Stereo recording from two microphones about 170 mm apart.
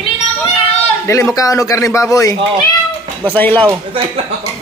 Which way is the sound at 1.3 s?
20° left (ahead or behind).